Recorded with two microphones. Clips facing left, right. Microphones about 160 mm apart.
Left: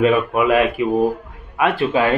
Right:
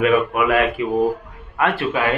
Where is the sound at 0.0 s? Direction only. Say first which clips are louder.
Left 1 dB; 25° left (ahead or behind).